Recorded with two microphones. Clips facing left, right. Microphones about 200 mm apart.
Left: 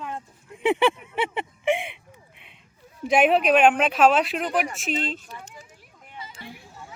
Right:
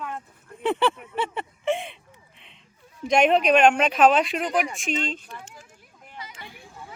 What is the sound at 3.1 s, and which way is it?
Speech, 5° left (ahead or behind).